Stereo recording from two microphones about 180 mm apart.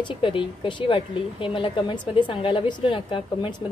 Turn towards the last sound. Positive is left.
turn(degrees=25)  # may be behind; listen again after turning